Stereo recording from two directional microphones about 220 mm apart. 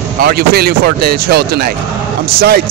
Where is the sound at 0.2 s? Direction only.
45° right (ahead or behind).